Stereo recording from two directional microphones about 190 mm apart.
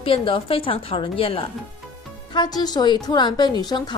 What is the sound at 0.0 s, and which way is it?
A woman's voice, 30° left (ahead or behind).